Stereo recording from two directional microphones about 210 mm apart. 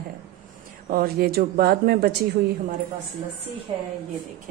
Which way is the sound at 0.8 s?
45° right (ahead or behind).